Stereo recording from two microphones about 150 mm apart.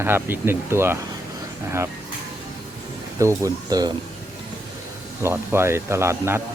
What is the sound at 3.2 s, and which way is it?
Speech, 20° right (ahead or behind).